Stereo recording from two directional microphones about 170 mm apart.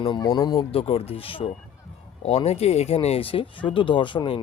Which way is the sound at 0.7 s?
35° left (ahead or behind).